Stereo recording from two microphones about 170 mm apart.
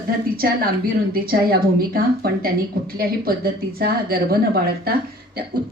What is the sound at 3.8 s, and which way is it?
Speech, 60° right (ahead or behind).